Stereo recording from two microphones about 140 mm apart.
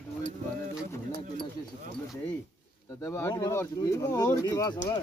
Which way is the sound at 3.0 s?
15° left (ahead or behind).